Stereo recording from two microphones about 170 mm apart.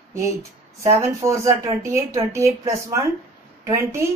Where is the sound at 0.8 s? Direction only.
20° right (ahead or behind).